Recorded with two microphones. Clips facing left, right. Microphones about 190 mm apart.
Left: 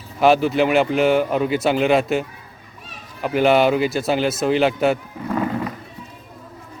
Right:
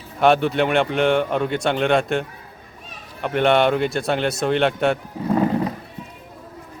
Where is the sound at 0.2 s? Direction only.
Centre (ahead or behind).